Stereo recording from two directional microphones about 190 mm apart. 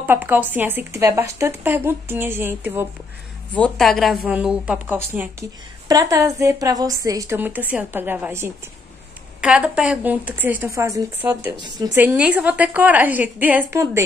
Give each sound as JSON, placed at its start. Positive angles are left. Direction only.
{"t": 0.0, "sound": "speech", "side_deg": -10}
{"t": 3.5, "sound": "a woman's voice", "side_deg": 5}
{"t": 12.0, "sound": "speech", "side_deg": -10}